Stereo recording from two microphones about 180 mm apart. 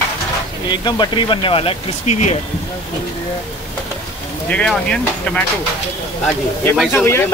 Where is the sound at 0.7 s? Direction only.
25° left (ahead or behind).